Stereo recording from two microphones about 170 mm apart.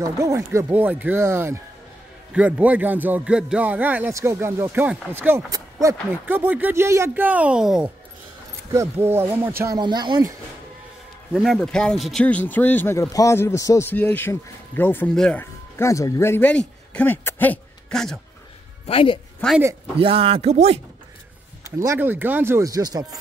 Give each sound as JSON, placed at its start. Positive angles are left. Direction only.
{"t": 0.0, "sound": "a man's voice", "side_deg": -15}
{"t": 8.7, "sound": "a man's voice", "side_deg": -15}
{"t": 11.3, "sound": "a man's voice", "side_deg": 0}
{"t": 18.9, "sound": "speech", "side_deg": 30}
{"t": 20.0, "sound": "speech", "side_deg": -35}
{"t": 21.6, "sound": "a man's voice", "side_deg": -15}